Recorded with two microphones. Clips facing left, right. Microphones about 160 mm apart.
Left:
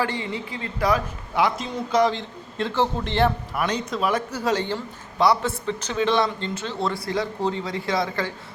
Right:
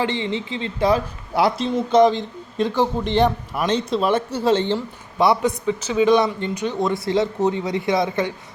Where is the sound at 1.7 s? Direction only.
25° right (ahead or behind).